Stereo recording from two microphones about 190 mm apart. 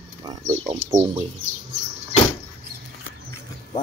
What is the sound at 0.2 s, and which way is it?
Speech, 20° right (ahead or behind).